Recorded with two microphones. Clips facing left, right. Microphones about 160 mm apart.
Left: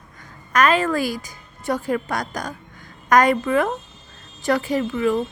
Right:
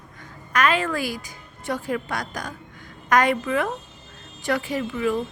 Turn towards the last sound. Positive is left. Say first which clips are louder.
# left 4 dB
turn(degrees=40)  # may be behind; listen again after turning